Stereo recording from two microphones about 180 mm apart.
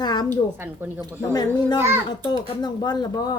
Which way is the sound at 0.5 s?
10° right (ahead or behind).